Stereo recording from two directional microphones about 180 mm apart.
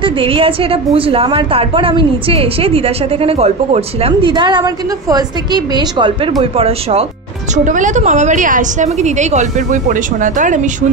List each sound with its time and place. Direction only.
0.0 s a woman's voice: 30° right (ahead or behind)
7.5 s a woman's voice: 45° right (ahead or behind)